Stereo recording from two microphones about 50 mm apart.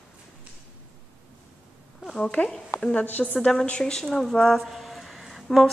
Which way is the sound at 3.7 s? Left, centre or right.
Centre.